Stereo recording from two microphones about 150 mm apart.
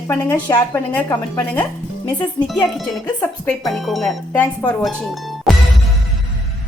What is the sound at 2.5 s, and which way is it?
Speech, centre (ahead or behind).